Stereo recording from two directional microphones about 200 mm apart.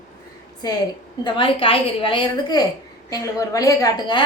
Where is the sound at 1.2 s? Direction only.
25° left (ahead or behind).